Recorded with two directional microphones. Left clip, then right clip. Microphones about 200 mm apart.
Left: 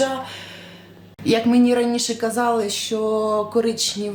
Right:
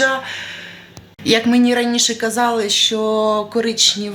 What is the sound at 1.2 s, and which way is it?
Speech, centre (ahead or behind).